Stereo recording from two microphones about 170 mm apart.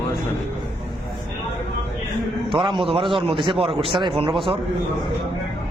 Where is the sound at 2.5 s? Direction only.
30° right (ahead or behind).